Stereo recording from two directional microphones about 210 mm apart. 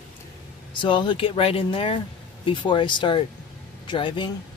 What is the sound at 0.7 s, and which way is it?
Speech, 25° left (ahead or behind).